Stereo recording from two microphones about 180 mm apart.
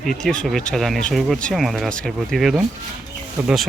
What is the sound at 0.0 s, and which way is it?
Speech, 5° left (ahead or behind).